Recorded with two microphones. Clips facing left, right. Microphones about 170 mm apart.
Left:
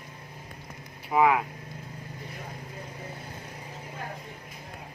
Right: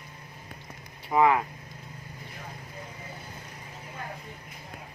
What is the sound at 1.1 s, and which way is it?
Speech, 5° left (ahead or behind).